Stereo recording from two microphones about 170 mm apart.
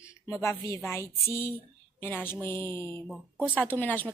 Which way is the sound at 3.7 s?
10° left (ahead or behind).